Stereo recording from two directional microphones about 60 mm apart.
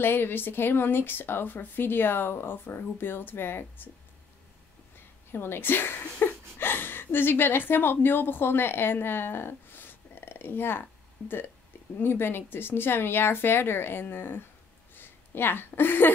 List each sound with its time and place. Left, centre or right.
0.0 s speech: left
5.3 s speech: left
15.0 s a sound: left